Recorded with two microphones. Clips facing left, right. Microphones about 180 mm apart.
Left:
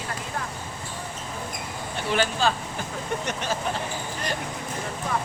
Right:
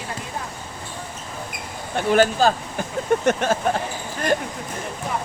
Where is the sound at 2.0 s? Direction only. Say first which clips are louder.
Right 8 dB; 50° right (ahead or behind).